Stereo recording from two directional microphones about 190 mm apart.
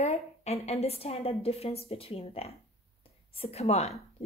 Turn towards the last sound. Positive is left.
turn(degrees=35)  # may be behind; listen again after turning